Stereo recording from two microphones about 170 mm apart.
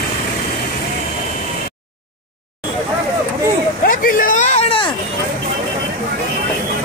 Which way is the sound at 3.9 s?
55° left (ahead or behind).